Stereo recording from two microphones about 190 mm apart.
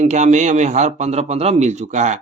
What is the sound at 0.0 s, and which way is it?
Speech, 40° right (ahead or behind).